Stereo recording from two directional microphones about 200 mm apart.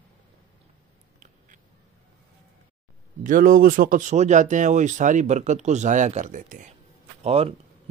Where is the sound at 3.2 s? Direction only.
40° right (ahead or behind).